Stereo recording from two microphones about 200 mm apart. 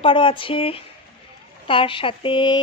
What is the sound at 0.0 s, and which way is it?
Speech, 25° left (ahead or behind).